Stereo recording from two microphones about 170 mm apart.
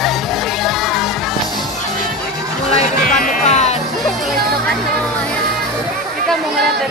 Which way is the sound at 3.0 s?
50° left (ahead or behind).